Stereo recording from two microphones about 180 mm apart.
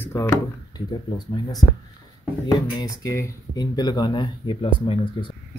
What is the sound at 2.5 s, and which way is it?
Speech, 20° left (ahead or behind).